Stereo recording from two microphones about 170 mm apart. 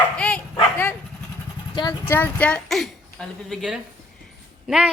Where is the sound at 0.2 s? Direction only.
5° left (ahead or behind).